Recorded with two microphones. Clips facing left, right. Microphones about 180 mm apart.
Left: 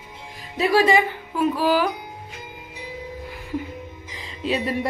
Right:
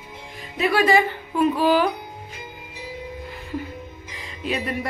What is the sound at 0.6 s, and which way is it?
Speech, 35° left (ahead or behind).